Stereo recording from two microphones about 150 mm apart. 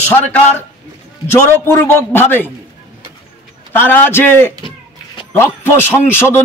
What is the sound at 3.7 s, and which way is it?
A man's voice, 10° left (ahead or behind).